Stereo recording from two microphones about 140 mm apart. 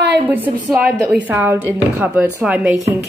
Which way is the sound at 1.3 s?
15° right (ahead or behind).